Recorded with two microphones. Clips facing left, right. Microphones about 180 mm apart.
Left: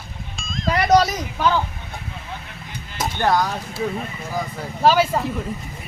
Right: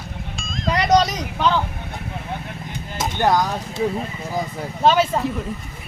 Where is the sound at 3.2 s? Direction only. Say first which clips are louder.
Right 1 dB; 15° right (ahead or behind).